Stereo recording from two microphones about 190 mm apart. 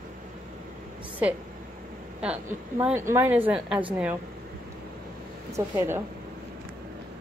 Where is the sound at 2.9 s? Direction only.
15° right (ahead or behind).